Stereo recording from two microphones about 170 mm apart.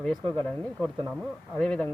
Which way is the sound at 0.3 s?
5° left (ahead or behind).